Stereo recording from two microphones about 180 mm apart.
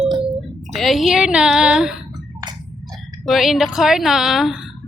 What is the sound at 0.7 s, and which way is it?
A woman's voice, centre (ahead or behind).